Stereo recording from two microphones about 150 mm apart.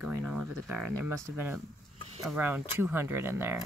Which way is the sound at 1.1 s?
15° right (ahead or behind).